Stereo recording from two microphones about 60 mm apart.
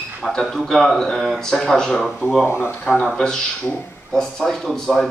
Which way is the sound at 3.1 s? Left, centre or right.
Centre.